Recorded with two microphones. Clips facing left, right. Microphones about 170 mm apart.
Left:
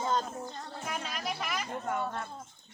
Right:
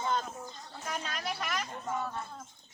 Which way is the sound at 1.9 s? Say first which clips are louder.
Left 1 dB; 70° left (ahead or behind).